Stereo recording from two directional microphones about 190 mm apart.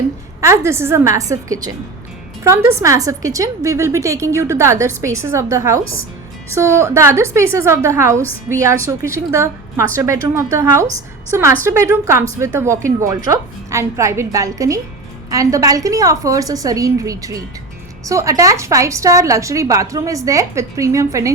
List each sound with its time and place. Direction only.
0.4 s a woman's voice: 15° right (ahead or behind)